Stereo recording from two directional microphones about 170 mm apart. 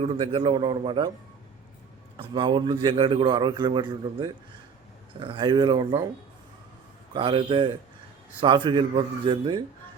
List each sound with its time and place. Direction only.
0.0 s a man's voice: 35° right (ahead or behind)
2.1 s a man's voice: 30° right (ahead or behind)
7.1 s a man's voice: 30° right (ahead or behind)